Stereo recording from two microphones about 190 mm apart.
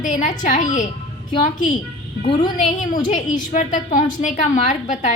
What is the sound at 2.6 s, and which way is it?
A woman's voice, 40° left (ahead or behind).